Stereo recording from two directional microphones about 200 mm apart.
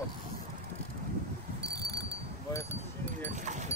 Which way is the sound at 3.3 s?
35° right (ahead or behind).